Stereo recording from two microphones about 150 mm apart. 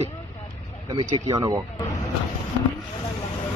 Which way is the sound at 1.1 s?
25° right (ahead or behind).